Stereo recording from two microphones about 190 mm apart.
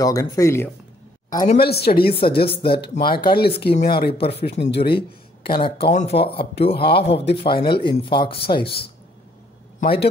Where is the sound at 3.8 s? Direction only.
55° left (ahead or behind).